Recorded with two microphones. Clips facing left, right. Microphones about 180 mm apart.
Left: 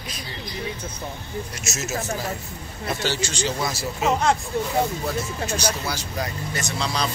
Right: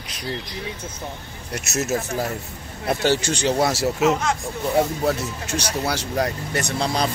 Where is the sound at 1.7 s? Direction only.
55° right (ahead or behind).